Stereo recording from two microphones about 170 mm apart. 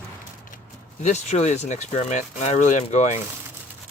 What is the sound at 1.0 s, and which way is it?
Speech, 45° left (ahead or behind).